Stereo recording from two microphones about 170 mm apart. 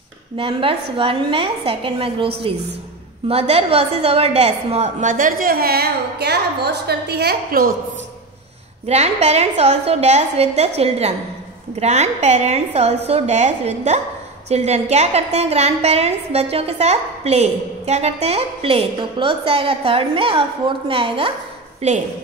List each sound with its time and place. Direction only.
0.4 s a woman's voice: 30° right (ahead or behind); by 7.7 s 65° right (ahead or behind)
8.8 s a woman's voice: 40° right (ahead or behind)